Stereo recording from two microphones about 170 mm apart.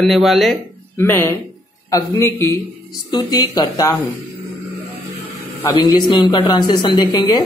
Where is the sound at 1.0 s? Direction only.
15° left (ahead or behind).